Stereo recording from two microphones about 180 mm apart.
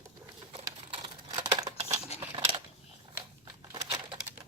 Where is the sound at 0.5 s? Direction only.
30° right (ahead or behind).